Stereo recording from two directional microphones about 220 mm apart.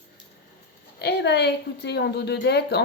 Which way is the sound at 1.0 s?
45° left (ahead or behind).